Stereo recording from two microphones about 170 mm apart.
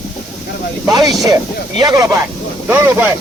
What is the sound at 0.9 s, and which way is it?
Speech, 25° right (ahead or behind).